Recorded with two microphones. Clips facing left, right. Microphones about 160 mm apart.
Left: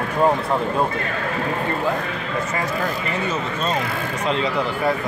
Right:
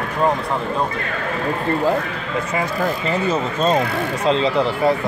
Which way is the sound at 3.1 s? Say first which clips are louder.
Right 4 dB; 35° right (ahead or behind).